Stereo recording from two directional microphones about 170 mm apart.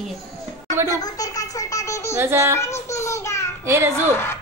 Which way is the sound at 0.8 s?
20° left (ahead or behind).